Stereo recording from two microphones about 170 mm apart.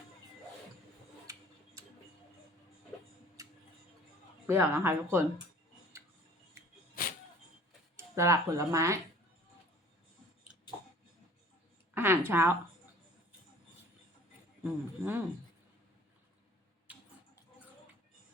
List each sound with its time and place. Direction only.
3.4 s tick-tock: 20° right (ahead or behind)
4.4 s speech: 15° right (ahead or behind)
7.9 s speech: 15° right (ahead or behind)
11.9 s speech: 10° right (ahead or behind)
14.6 s speech: 10° right (ahead or behind)
16.9 s a sound: 10° right (ahead or behind)